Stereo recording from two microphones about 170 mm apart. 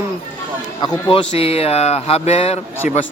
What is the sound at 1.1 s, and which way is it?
A man's voice, 35° left (ahead or behind).